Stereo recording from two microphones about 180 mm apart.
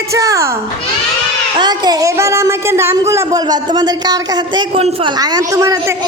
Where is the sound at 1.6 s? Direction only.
25° right (ahead or behind).